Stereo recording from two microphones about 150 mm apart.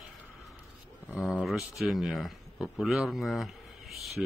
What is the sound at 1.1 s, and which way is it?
Speech, centre (ahead or behind).